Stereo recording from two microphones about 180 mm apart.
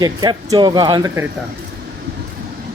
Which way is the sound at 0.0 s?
20° right (ahead or behind).